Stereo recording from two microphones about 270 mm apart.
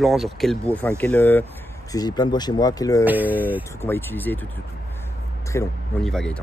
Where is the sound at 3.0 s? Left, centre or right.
Centre.